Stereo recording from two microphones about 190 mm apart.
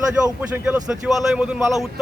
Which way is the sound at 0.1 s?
10° right (ahead or behind).